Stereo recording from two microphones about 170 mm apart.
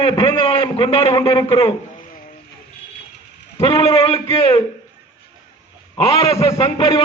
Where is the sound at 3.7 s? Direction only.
30° left (ahead or behind).